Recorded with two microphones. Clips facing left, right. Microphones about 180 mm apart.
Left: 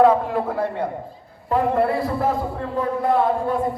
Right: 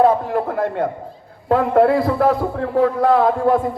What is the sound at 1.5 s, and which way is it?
A man's voice, 90° right.